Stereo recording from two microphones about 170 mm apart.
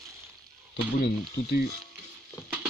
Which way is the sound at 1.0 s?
70° left (ahead or behind).